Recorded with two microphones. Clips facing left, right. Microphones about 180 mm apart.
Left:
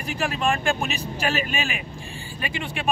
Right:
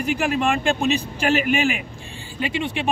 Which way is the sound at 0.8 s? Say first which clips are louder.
Right 6 dB; 20° right (ahead or behind).